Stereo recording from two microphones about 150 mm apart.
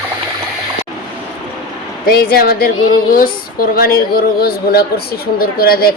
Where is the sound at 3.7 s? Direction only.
90° left.